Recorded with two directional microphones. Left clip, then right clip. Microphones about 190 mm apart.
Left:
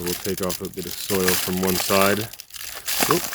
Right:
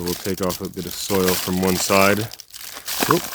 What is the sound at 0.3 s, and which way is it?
Speech, 60° right (ahead or behind).